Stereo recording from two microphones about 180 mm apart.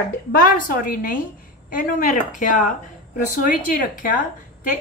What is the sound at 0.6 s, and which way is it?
A woman's voice, 50° left (ahead or behind).